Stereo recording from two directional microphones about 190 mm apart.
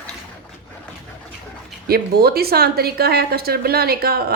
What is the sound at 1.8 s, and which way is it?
A woman's voice, 55° right (ahead or behind).